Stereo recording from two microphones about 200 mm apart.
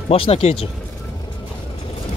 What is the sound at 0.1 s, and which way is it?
Speech, 30° left (ahead or behind).